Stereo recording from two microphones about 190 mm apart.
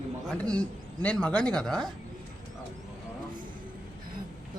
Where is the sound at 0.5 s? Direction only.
5° left (ahead or behind).